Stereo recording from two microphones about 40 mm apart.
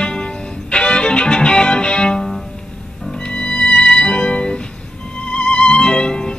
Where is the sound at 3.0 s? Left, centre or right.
Centre.